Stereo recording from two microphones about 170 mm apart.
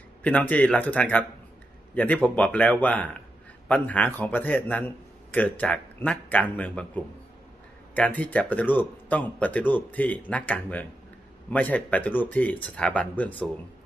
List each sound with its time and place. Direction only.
0.2 s a man's voice: 10° left (ahead or behind)
2.2 s a man's voice: 10° left (ahead or behind)
7.9 s a man's voice: 10° left (ahead or behind)